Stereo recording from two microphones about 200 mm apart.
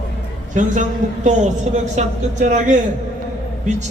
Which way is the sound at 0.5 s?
40° right (ahead or behind).